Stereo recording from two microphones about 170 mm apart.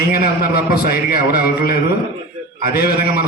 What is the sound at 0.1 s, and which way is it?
A man's voice, 65° left (ahead or behind).